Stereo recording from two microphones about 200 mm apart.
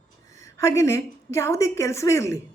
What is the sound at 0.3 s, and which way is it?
Speech, 15° left (ahead or behind).